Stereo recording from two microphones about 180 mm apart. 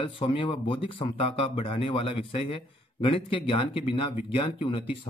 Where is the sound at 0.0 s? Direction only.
30° left (ahead or behind).